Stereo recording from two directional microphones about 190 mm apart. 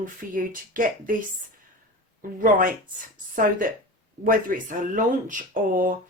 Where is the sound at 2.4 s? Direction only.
45° right (ahead or behind).